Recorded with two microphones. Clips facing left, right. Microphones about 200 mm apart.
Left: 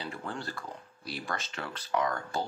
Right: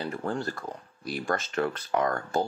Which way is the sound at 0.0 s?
45° right (ahead or behind).